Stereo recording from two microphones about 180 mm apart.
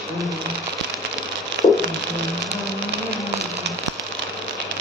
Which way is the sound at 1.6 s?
60° right (ahead or behind).